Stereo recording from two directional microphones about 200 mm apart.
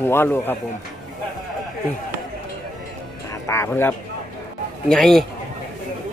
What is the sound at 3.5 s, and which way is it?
Speech, 10° left (ahead or behind).